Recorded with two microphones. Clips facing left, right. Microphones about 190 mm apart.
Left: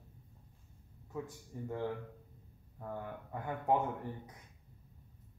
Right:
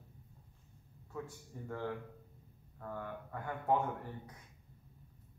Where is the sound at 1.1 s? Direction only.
15° left (ahead or behind).